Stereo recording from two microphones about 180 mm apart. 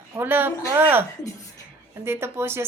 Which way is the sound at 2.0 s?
15° right (ahead or behind).